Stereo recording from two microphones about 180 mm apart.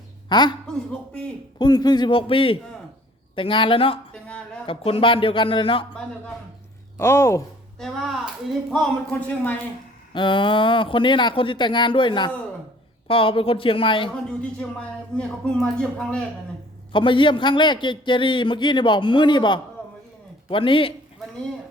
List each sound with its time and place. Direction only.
0.3 s speech: 25° left (ahead or behind)
0.9 s a man's voice: 5° left (ahead or behind)
1.5 s a man's voice: 25° left (ahead or behind)
4.1 s a sound: 5° left (ahead or behind)
4.6 s a man's voice: 30° left (ahead or behind)
6.9 s speech: 15° left (ahead or behind)
7.8 s a man's voice: centre (ahead or behind)
10.2 s a man's voice: 25° left (ahead or behind)
15.1 s a man's voice: 5° left (ahead or behind)
16.9 s a man's voice: 30° left (ahead or behind)